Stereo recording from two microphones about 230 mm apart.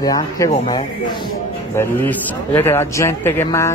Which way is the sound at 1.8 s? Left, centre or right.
Centre.